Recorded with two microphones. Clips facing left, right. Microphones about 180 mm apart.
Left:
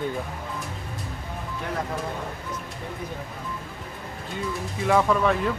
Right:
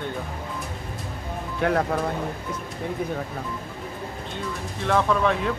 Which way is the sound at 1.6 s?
70° right (ahead or behind).